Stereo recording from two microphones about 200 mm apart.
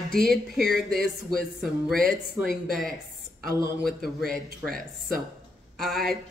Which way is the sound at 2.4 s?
Centre (ahead or behind).